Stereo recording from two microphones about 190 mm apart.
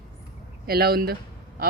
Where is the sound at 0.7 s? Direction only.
55° right (ahead or behind).